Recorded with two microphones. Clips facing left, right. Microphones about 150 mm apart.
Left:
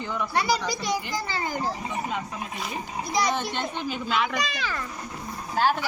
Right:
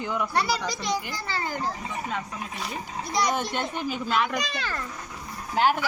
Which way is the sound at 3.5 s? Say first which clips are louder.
Right 1 dB; 10° right (ahead or behind).